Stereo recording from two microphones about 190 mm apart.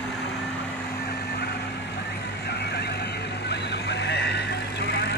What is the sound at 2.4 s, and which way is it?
Vehicle, 60° left (ahead or behind).